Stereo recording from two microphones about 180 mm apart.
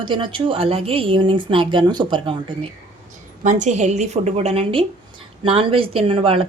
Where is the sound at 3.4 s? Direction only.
40° right (ahead or behind).